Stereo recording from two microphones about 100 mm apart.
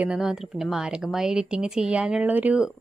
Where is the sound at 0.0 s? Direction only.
5° right (ahead or behind).